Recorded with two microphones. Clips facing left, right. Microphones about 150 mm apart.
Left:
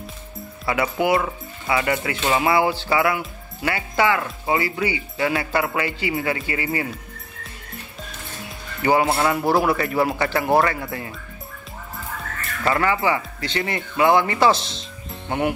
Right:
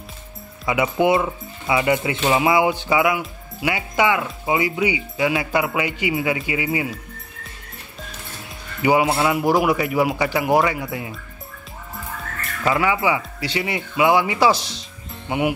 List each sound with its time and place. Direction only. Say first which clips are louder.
0.7 s speech: right 2 dB; 20° right (ahead or behind)
8.8 s speech: right 1 dB; 10° right (ahead or behind)
12.6 s speech: right 1 dB; 5° right (ahead or behind)